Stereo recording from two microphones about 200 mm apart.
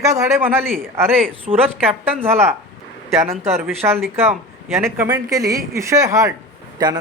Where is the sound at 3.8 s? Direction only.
10° right (ahead or behind).